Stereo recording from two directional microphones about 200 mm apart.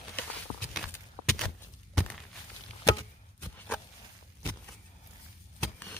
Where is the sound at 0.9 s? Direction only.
5° left (ahead or behind).